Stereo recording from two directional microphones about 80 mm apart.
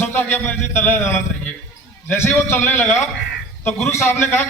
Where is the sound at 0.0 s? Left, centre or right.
Left.